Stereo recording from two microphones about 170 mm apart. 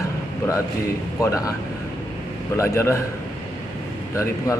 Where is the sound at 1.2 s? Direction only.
20° left (ahead or behind).